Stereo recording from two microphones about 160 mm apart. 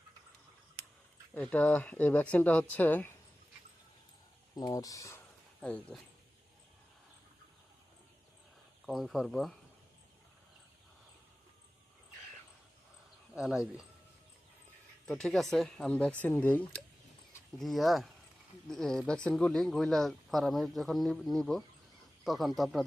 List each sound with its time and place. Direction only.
1.4 s speech: 10° left (ahead or behind)
4.5 s speech: 25° left (ahead or behind)
5.5 s speech: 5° left (ahead or behind)
8.9 s speech: centre (ahead or behind)
13.3 s speech: 5° right (ahead or behind)
15.0 s speech: 5° left (ahead or behind)